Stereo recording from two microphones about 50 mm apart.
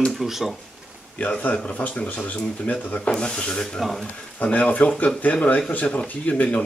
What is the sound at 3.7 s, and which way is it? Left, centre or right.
Speech, centre.